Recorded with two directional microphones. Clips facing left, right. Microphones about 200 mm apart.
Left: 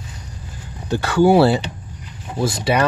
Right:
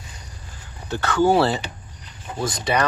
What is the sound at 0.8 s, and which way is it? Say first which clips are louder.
Speech: left 4 dB; 10° left (ahead or behind).